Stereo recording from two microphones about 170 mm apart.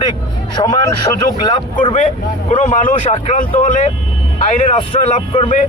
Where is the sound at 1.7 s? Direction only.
45° left (ahead or behind).